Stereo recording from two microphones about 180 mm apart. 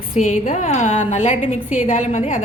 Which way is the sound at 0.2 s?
45° left (ahead or behind).